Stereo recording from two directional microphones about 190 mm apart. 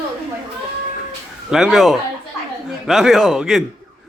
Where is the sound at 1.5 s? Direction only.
Centre (ahead or behind).